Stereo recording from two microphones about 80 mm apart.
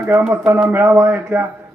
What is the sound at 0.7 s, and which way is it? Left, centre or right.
Speech, right.